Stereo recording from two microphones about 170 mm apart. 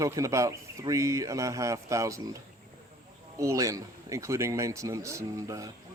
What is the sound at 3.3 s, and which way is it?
Speech, 20° right (ahead or behind).